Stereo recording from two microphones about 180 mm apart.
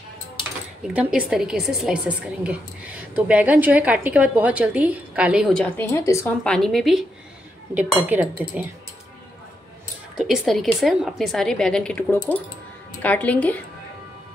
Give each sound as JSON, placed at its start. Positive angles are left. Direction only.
{"t": 0.9, "sound": "a woman's voice", "side_deg": -5}
{"t": 5.5, "sound": "speech", "side_deg": 10}
{"t": 6.4, "sound": "a woman's voice", "side_deg": 5}
{"t": 10.1, "sound": "speech", "side_deg": 0}